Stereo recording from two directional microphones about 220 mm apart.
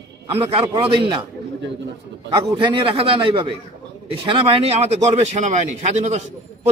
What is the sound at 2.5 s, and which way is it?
A man's voice, 20° right (ahead or behind).